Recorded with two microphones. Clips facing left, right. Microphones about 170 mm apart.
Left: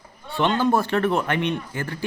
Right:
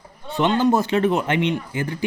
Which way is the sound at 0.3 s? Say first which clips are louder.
Right 2 dB; 15° right (ahead or behind).